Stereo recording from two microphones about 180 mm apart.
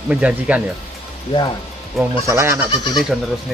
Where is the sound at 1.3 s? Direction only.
25° left (ahead or behind).